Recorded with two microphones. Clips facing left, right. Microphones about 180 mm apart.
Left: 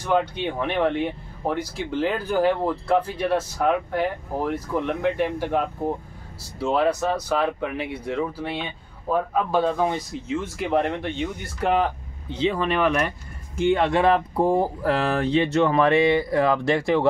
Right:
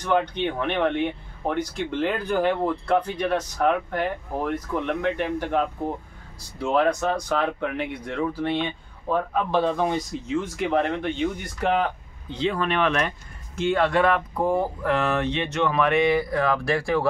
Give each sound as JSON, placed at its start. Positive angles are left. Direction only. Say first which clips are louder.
{"t": 0.0, "sound": "speech", "louder": "even", "side_deg": 5}
{"t": 6.6, "sound": "speech", "louder": "even", "side_deg": 10}
{"t": 13.6, "sound": "speech", "louder": "left 1 dB", "side_deg": 20}